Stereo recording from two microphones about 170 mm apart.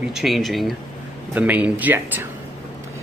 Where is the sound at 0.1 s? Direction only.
Centre (ahead or behind).